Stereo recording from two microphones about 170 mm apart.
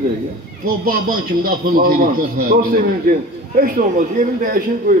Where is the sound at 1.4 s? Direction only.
60° right (ahead or behind).